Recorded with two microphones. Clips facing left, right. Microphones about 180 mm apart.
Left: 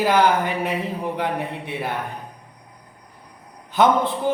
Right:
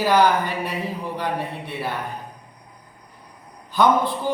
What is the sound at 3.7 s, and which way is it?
Speech, 20° left (ahead or behind).